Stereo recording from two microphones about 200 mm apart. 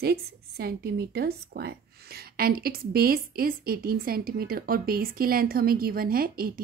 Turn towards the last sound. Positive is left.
turn(degrees=-45)  # may be behind; listen again after turning